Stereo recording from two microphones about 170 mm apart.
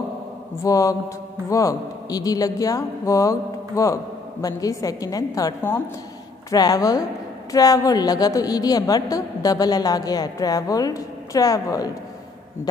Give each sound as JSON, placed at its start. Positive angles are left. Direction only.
{"t": 0.7, "sound": "speech", "side_deg": 20}